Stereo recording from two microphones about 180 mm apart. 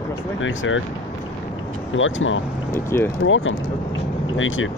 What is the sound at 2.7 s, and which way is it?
Speech, 10° left (ahead or behind).